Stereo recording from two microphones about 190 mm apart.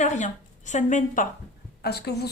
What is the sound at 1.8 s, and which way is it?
Speech, 60° left (ahead or behind).